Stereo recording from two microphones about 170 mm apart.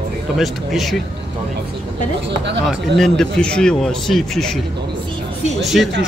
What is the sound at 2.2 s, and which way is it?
Speech, 90° right.